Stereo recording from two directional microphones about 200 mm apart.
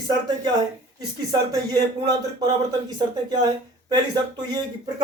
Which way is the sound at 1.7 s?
20° right (ahead or behind).